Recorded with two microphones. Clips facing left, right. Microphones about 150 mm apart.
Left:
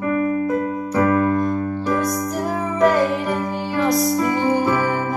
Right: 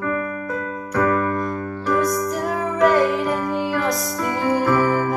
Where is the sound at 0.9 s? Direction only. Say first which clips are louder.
Left 2 dB; 20° left (ahead or behind).